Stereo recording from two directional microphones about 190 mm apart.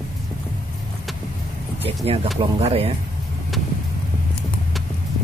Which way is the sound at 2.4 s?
30° right (ahead or behind).